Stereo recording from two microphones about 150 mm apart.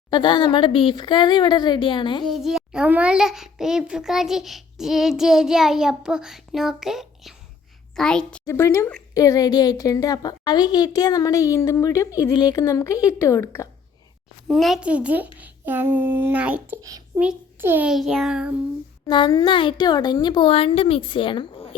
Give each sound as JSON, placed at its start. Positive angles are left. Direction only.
{"t": 0.1, "sound": "speech", "side_deg": 30}
{"t": 2.2, "sound": "a child's voice", "side_deg": 0}
{"t": 8.4, "sound": "a woman's voice", "side_deg": 20}
{"t": 14.4, "sound": "a child's voice", "side_deg": 0}
{"t": 17.9, "sound": "a child's voice", "side_deg": 0}
{"t": 19.0, "sound": "speech", "side_deg": 30}